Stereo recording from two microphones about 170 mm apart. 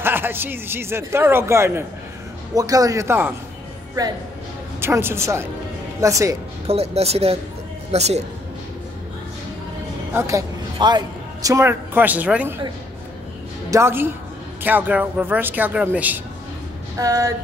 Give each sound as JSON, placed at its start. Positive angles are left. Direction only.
{"t": 0.0, "sound": "a man's voice", "side_deg": -10}
{"t": 4.7, "sound": "a man's voice", "side_deg": -15}
{"t": 6.7, "sound": "speech", "side_deg": -35}
{"t": 10.1, "sound": "a man's voice", "side_deg": -20}
{"t": 13.7, "sound": "a man's voice", "side_deg": -15}